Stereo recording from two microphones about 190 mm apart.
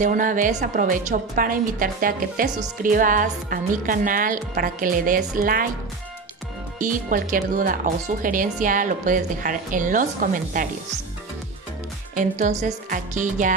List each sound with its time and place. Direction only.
0.0 s speech: 45° right (ahead or behind)
6.8 s speech: 45° right (ahead or behind)
12.2 s speech: 40° right (ahead or behind)